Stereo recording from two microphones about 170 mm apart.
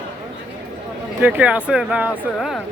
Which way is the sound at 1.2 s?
10° right (ahead or behind).